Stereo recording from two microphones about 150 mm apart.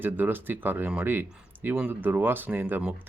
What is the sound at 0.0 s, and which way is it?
Speech, 15° right (ahead or behind).